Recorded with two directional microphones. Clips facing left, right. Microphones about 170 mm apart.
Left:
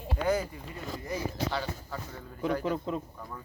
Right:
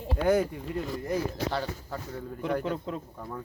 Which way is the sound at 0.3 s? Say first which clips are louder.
Right 7 dB; 70° right (ahead or behind).